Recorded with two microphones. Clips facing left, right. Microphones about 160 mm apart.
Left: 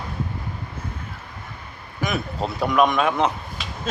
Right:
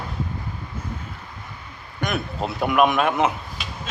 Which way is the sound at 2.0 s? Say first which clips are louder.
Even; centre (ahead or behind).